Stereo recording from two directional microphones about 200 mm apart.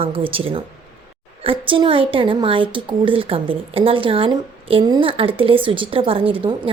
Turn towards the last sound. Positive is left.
turn(degrees=-25)  # may be behind; listen again after turning